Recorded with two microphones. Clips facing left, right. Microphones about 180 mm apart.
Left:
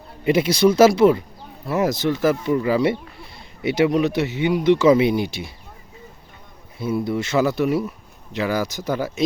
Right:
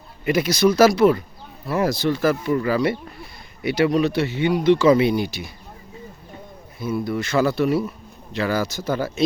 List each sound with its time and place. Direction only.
0.3 s speech: 25° left (ahead or behind)
6.7 s speech: 25° left (ahead or behind)